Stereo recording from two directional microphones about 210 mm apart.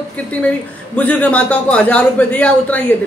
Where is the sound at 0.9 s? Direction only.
5° left (ahead or behind).